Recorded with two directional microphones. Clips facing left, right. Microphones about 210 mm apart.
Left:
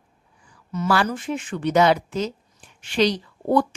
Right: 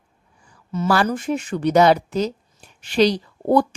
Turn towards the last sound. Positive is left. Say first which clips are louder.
# right 3 dB
turn(degrees=-35)  # may be behind; listen again after turning